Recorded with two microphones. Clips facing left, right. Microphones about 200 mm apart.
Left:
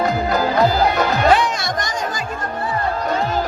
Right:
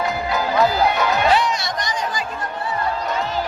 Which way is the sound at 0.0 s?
45° left (ahead or behind).